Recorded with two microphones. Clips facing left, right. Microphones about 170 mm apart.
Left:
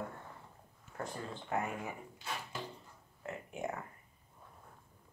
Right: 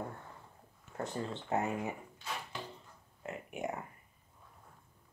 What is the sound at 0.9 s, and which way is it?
Speech, 25° right (ahead or behind).